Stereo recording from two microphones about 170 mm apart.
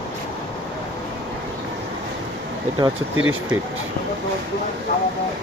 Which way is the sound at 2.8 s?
25° right (ahead or behind).